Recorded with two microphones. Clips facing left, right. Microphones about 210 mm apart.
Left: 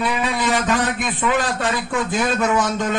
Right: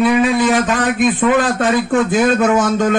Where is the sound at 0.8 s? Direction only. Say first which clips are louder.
Right 8 dB; 50° right (ahead or behind).